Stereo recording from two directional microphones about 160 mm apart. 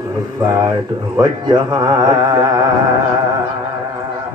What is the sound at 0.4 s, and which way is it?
Mantra, 20° right (ahead or behind).